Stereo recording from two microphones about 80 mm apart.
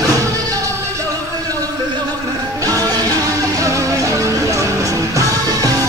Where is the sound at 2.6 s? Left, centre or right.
Right.